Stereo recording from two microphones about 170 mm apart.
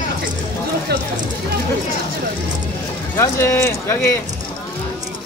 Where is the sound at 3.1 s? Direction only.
15° left (ahead or behind).